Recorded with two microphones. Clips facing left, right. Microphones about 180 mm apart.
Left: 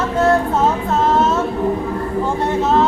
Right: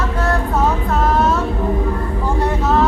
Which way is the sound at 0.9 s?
25° left (ahead or behind).